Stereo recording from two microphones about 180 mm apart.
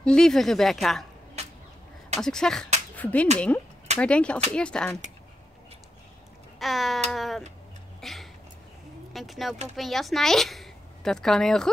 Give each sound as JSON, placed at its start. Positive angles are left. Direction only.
{"t": 0.0, "sound": "speech", "side_deg": 5}
{"t": 1.4, "sound": "a sound", "side_deg": -35}
{"t": 2.1, "sound": "speech", "side_deg": 5}
{"t": 6.6, "sound": "speech", "side_deg": 0}
{"t": 8.0, "sound": "a sound", "side_deg": 0}
{"t": 9.1, "sound": "a woman's voice", "side_deg": 0}